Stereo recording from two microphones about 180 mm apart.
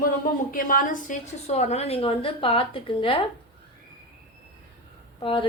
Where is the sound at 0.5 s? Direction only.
50° left (ahead or behind); by 3.2 s 30° left (ahead or behind).